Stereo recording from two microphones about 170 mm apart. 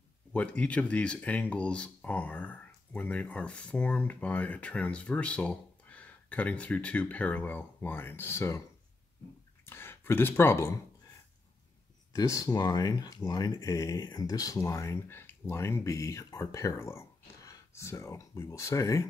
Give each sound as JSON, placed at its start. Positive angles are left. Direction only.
{"t": 0.3, "sound": "speech", "side_deg": 10}
{"t": 9.7, "sound": "speech", "side_deg": 15}
{"t": 12.2, "sound": "speech", "side_deg": 20}